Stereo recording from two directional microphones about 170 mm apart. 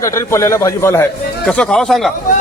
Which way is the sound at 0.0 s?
15° left (ahead or behind).